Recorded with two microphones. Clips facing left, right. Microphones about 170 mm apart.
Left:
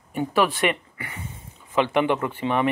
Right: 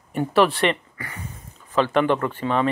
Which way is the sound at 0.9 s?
25° left (ahead or behind).